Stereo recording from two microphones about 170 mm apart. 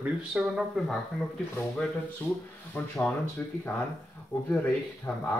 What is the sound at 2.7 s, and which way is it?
Speech, 5° left (ahead or behind).